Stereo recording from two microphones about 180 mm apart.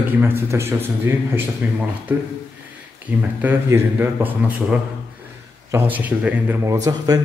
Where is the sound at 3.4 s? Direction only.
10° right (ahead or behind).